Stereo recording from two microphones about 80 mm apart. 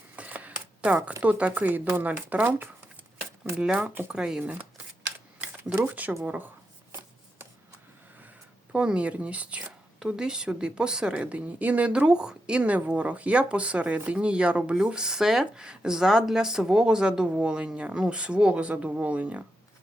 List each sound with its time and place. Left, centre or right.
0.2 s a sound: centre
1.2 s a woman's voice: centre
5.8 s speech: right
8.7 s a woman's voice: centre